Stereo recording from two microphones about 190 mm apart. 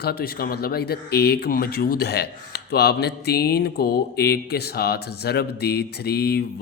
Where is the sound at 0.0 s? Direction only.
55° left (ahead or behind).